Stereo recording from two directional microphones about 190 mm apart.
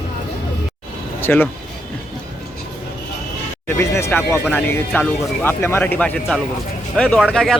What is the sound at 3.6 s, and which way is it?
Speech, 15° left (ahead or behind).